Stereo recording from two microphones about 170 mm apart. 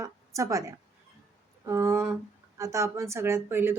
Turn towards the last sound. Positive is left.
turn(degrees=-15)  # may be behind; listen again after turning